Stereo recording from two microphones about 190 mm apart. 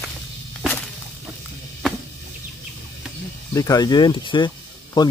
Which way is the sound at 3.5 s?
20° left (ahead or behind).